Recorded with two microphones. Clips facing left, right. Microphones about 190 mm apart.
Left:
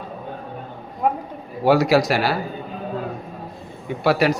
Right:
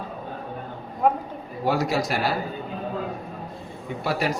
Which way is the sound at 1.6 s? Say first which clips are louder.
Left 8 dB; 75° left (ahead or behind).